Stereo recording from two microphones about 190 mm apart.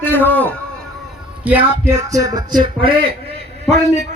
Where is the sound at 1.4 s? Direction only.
10° right (ahead or behind).